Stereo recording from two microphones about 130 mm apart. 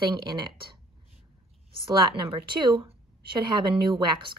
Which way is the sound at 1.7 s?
40° right (ahead or behind).